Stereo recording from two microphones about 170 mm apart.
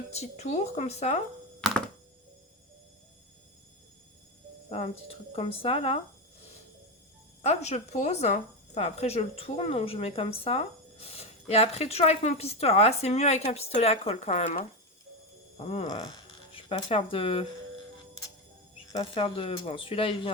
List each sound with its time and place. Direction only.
0.1 s speech: 40° left (ahead or behind)
4.7 s speech: 35° left (ahead or behind)
7.4 s speech: 40° left (ahead or behind)
18.9 s speech: 35° left (ahead or behind)